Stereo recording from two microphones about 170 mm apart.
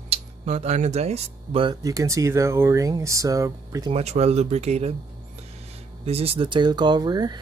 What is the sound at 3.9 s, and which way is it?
Speech, 40° right (ahead or behind).